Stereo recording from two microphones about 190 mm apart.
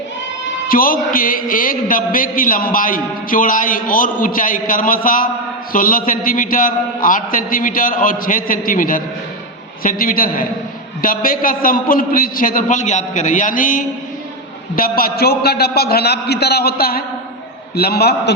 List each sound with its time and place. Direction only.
0.7 s a man's voice: 50° left (ahead or behind)